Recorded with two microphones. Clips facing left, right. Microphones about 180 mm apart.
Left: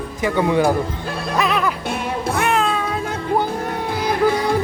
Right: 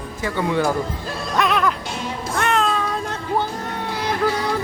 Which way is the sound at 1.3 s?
Centre (ahead or behind).